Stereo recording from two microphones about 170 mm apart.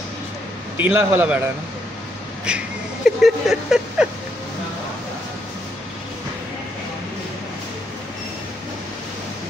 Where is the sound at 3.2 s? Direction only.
5° right (ahead or behind).